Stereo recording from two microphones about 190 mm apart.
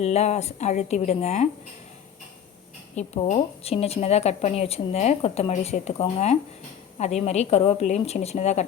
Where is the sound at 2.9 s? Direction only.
35° left (ahead or behind).